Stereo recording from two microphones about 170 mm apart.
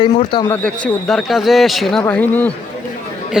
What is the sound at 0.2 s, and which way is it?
Speech, 30° left (ahead or behind).